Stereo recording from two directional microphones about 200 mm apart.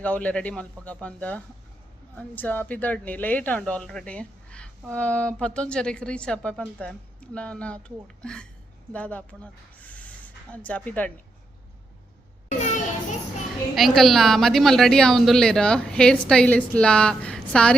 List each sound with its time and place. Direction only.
0.0 s a woman's voice: 5° left (ahead or behind)
12.5 s children playing: 35° left (ahead or behind)
13.7 s a woman's voice: centre (ahead or behind)